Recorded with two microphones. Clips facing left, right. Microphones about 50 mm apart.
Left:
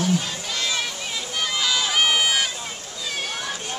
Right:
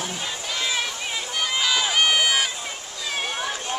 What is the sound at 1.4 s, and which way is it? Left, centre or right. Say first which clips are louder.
Run: right 1 dB; centre.